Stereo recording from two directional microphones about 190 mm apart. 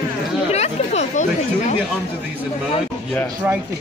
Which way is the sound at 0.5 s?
35° left (ahead or behind).